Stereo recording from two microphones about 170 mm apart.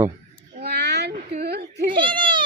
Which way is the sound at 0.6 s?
70° right (ahead or behind).